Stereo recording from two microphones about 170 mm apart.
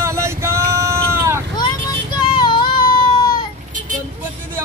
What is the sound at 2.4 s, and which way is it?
Baby cry, 25° left (ahead or behind).